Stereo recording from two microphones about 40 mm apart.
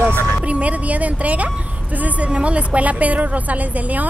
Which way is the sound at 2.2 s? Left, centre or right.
Right.